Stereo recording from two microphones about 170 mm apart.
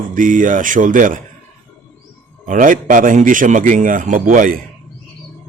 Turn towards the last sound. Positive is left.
turn(degrees=-50)  # may be behind; listen again after turning